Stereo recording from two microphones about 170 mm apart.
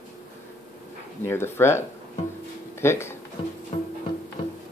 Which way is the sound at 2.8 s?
15° left (ahead or behind).